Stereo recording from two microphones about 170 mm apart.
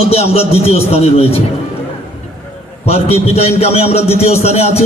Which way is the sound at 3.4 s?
35° left (ahead or behind).